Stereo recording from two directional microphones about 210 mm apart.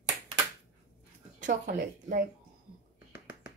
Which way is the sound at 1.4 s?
40° right (ahead or behind).